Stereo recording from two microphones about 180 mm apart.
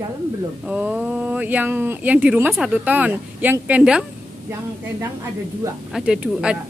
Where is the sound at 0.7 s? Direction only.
5° right (ahead or behind).